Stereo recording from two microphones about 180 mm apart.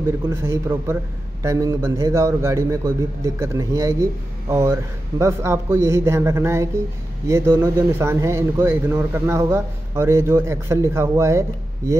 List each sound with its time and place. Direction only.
0.3 s speech: 15° right (ahead or behind)